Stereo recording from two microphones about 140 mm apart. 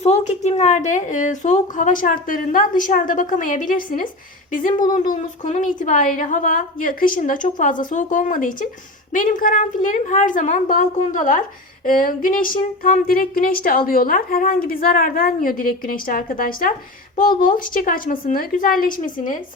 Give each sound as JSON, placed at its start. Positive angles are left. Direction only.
{"t": 0.0, "sound": "a woman's voice", "side_deg": 50}
{"t": 4.9, "sound": "a woman's voice", "side_deg": 65}
{"t": 11.9, "sound": "a woman's voice", "side_deg": 85}